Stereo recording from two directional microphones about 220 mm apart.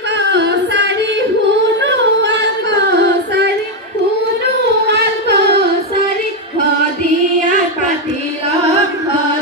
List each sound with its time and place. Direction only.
0.2 s a sound: 50° right (ahead or behind)
1.8 s singing: 50° right (ahead or behind)
4.8 s carnatic music: 50° right (ahead or behind)